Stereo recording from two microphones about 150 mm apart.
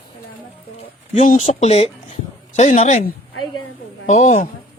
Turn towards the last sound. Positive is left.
turn(degrees=50)  # may be behind; listen again after turning